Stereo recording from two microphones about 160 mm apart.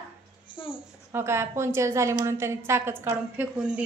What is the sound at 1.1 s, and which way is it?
A woman's voice, 15° right (ahead or behind).